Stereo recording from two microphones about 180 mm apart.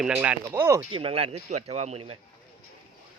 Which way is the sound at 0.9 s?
30° right (ahead or behind).